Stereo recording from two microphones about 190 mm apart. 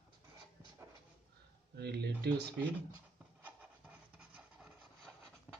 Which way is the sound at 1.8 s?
60° right (ahead or behind).